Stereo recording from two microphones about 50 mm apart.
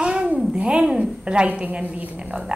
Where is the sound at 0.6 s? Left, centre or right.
Right.